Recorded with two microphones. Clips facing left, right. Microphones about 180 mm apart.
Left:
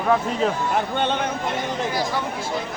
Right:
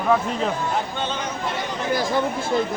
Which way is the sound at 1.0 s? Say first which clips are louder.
Left 4 dB; 60° left (ahead or behind).